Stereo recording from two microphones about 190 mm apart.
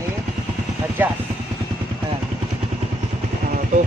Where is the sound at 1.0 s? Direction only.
10° right (ahead or behind).